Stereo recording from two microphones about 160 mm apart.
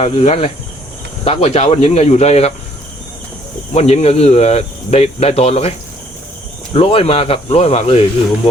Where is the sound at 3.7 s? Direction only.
45° left (ahead or behind).